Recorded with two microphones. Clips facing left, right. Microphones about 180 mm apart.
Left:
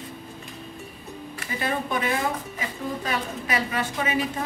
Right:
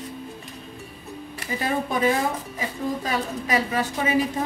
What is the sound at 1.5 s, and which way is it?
A woman's voice, 35° right (ahead or behind).